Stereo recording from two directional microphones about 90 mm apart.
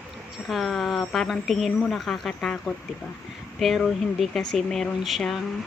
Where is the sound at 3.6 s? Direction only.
Centre (ahead or behind).